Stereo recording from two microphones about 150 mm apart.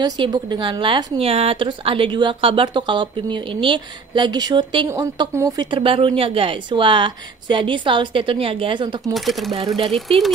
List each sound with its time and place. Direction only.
0.0 s speech: 30° right (ahead or behind)
5.7 s speech: 35° right (ahead or behind)
9.1 s speech: centre (ahead or behind)